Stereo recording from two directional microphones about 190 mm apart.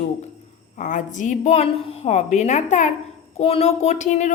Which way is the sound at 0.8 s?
40° left (ahead or behind).